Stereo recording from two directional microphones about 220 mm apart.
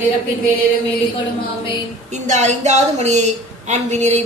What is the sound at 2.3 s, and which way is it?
Speech, 30° right (ahead or behind).